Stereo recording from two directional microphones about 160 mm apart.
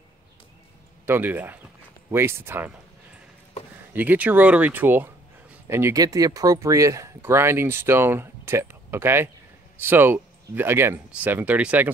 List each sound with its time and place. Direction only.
1.0 s speech: 10° right (ahead or behind)
3.9 s speech: 10° right (ahead or behind)